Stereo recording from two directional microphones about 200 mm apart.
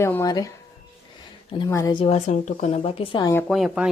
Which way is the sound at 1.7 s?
15° left (ahead or behind).